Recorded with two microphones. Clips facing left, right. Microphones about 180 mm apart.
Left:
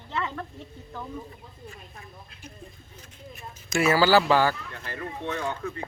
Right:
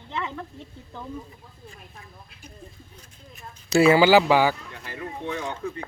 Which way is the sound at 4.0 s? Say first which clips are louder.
Right 3 dB; 15° right (ahead or behind).